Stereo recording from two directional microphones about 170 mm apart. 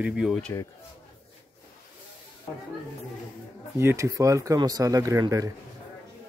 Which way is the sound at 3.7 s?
15° right (ahead or behind).